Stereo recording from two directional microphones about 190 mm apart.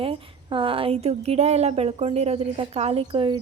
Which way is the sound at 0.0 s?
30° right (ahead or behind).